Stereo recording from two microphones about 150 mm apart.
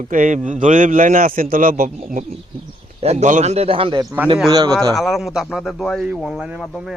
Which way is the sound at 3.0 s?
45° right (ahead or behind).